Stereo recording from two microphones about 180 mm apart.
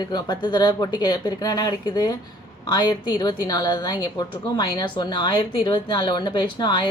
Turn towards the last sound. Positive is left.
turn(degrees=25)  # may be behind; listen again after turning